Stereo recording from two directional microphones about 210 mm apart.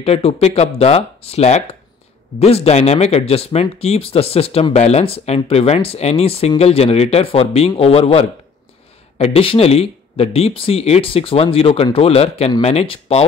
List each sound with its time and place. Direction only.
0.0 s speech: 30° left (ahead or behind)